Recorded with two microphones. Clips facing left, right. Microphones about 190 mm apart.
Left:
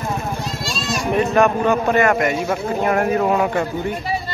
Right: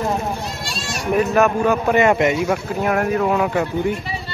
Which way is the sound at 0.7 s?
65° right (ahead or behind).